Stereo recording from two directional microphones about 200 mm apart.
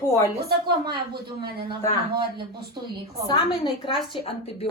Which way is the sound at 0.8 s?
50° right (ahead or behind).